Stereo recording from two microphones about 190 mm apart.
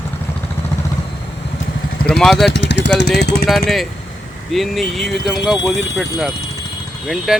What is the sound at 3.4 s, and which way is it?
Speech, centre (ahead or behind).